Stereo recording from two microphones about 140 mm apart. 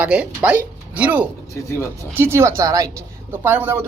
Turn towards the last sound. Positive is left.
turn(degrees=-15)  # may be behind; listen again after turning